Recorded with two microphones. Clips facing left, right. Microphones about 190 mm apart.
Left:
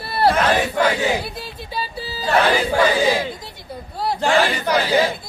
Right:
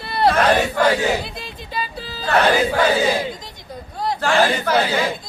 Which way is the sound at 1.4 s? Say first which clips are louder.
Even; 10° left (ahead or behind).